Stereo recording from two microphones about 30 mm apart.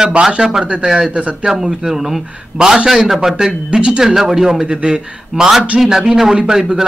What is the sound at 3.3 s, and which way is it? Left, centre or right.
Speech, centre.